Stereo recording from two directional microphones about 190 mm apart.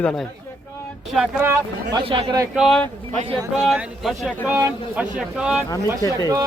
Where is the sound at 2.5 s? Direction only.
Centre (ahead or behind).